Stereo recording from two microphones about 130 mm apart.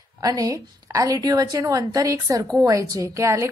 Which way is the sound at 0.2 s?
30° right (ahead or behind).